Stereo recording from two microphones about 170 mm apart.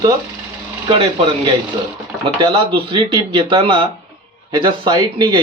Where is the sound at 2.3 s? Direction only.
25° right (ahead or behind).